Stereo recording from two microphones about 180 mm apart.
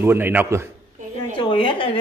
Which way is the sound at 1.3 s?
30° left (ahead or behind).